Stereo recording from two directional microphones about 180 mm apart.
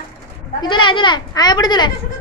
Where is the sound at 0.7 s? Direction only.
25° left (ahead or behind).